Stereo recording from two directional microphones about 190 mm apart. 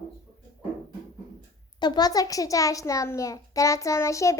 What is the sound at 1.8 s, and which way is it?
A child's voice, 20° left (ahead or behind).